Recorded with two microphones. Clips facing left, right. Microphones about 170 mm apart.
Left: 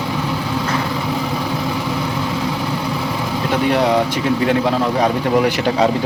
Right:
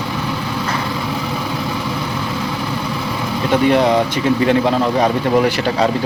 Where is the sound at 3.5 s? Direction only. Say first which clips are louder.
Right 3 dB; 5° left (ahead or behind).